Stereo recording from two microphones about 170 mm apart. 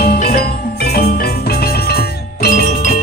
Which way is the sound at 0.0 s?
60° left (ahead or behind).